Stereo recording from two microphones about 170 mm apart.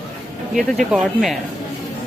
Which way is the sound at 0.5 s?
Centre (ahead or behind).